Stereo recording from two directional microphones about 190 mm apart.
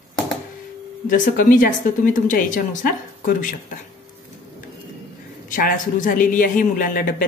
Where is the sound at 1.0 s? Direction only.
45° left (ahead or behind).